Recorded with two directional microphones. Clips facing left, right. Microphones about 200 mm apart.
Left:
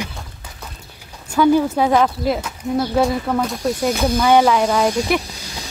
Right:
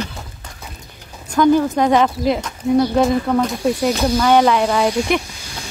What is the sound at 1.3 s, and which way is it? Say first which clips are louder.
Speech: right 1 dB; 10° left (ahead or behind).